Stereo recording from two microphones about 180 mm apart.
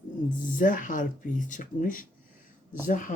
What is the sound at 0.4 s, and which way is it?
Speech, 50° left (ahead or behind).